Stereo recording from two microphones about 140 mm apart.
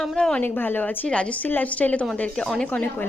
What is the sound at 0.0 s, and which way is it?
A woman's voice, 5° left (ahead or behind).